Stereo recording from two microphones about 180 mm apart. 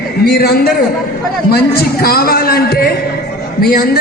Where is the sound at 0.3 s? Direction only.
60° left (ahead or behind).